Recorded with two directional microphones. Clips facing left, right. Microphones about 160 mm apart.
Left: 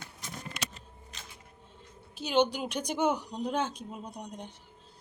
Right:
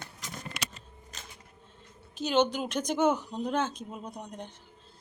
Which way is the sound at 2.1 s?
10° left (ahead or behind).